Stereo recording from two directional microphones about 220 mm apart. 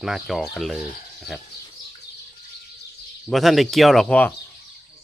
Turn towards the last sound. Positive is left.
turn(degrees=5)  # may be behind; listen again after turning